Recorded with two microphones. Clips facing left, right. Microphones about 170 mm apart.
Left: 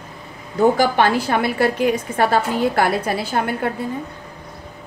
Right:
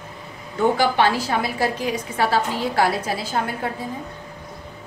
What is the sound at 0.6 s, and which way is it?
A woman's voice, 45° left (ahead or behind).